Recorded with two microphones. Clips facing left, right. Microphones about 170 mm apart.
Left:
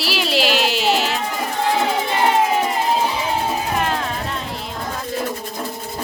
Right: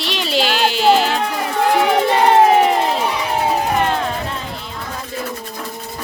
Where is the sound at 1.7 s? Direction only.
65° right (ahead or behind).